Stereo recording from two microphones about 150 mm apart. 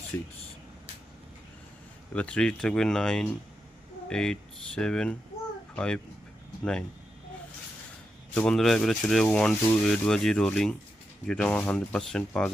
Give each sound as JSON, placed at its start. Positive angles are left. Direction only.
{"t": 0.1, "sound": "speech", "side_deg": 15}
{"t": 2.1, "sound": "speech", "side_deg": 10}
{"t": 8.4, "sound": "speech", "side_deg": 5}